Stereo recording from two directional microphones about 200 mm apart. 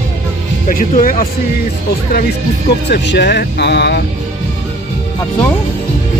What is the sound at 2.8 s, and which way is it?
Speech, 55° left (ahead or behind).